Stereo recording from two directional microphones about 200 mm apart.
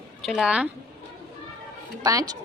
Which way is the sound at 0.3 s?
5° right (ahead or behind).